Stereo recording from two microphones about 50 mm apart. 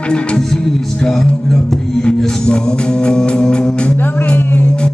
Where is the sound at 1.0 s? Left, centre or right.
Centre.